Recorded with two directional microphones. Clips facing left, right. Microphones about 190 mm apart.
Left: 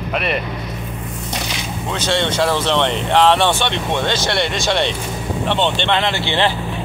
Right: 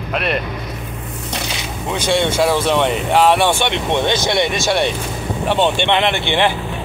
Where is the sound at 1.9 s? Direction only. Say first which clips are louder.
Right 3 dB; 10° right (ahead or behind).